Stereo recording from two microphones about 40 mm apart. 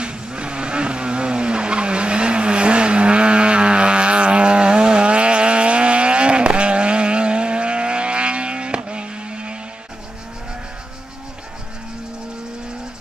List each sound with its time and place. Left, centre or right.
0.0 s vehicle: right